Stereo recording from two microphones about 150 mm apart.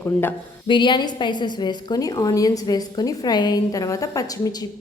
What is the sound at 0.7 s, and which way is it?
A woman's voice, 30° left (ahead or behind).